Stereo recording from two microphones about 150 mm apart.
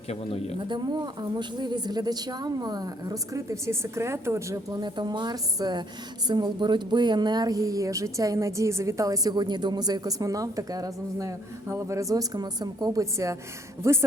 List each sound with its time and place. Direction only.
0.1 s speech: 45° left (ahead or behind)
0.7 s speech: 30° right (ahead or behind)